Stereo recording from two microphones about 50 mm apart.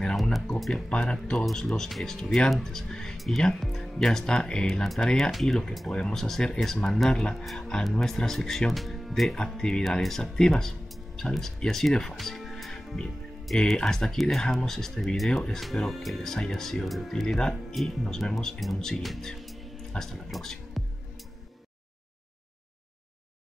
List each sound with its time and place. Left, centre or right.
0.0 s music: centre
0.6 s speech: centre
0.8 s speech: centre
1.4 s speech: centre
9.6 s speech: centre
11.9 s music: centre
13.7 s speech: centre
19.3 s music: centre
19.9 s speech: centre